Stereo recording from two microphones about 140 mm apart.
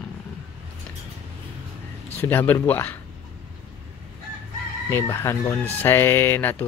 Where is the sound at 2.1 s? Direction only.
15° left (ahead or behind).